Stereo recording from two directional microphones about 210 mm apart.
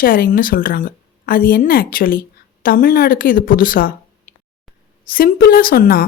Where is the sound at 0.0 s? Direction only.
45° left (ahead or behind).